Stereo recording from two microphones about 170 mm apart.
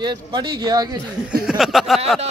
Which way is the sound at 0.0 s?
25° right (ahead or behind).